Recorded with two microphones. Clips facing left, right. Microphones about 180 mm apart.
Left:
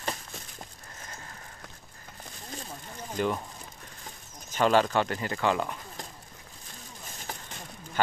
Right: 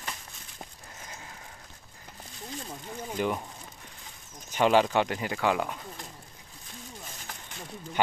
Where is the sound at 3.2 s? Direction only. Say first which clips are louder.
Left 1 dB; 10° right (ahead or behind).